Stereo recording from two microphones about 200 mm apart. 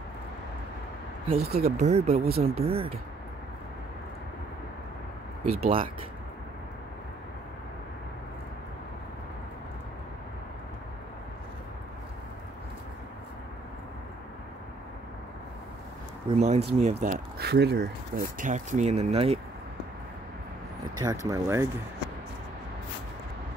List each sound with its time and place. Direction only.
1.2 s speech: 30° right (ahead or behind)
5.4 s speech: 30° right (ahead or behind)
16.3 s speech: 30° right (ahead or behind)
20.9 s speech: 20° right (ahead or behind)